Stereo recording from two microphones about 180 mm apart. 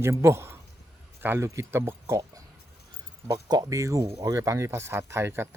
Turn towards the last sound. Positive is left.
turn(degrees=-15)  # may be behind; listen again after turning